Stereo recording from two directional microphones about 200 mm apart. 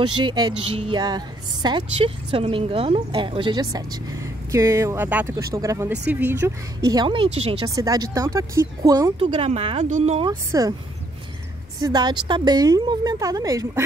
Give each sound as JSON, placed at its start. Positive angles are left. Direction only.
{"t": 0.2, "sound": "a woman's voice", "side_deg": -20}
{"t": 7.6, "sound": "speech", "side_deg": -15}
{"t": 9.2, "sound": "a woman's voice", "side_deg": -30}
{"t": 10.2, "sound": "speech", "side_deg": -20}
{"t": 11.8, "sound": "a woman's voice", "side_deg": -20}